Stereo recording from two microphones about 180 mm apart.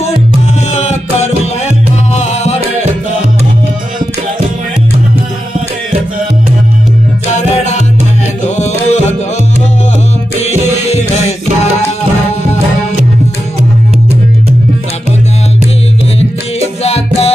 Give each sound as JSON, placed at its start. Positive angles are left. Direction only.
{"t": 0.7, "sound": "music", "side_deg": 40}
{"t": 7.3, "sound": "music", "side_deg": 40}
{"t": 10.9, "sound": "music", "side_deg": 35}
{"t": 16.2, "sound": "music", "side_deg": 35}